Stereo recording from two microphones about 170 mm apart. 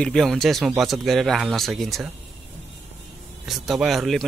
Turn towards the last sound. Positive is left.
turn(degrees=0)  # may be behind; listen again after turning